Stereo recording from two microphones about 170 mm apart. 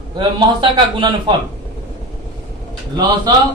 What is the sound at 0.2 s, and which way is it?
Speech, 30° right (ahead or behind).